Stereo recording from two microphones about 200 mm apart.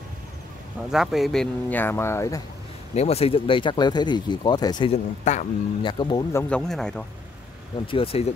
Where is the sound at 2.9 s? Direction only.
30° left (ahead or behind).